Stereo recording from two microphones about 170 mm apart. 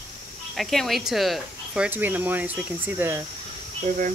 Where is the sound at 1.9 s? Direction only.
10° right (ahead or behind).